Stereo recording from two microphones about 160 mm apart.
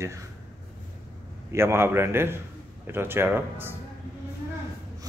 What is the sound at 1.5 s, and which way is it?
Speech, 15° right (ahead or behind).